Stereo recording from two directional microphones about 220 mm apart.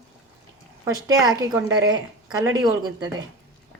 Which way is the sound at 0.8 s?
15° right (ahead or behind).